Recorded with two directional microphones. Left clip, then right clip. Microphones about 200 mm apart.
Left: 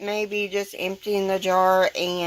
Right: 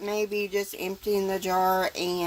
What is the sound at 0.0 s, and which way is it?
Speech, 10° right (ahead or behind).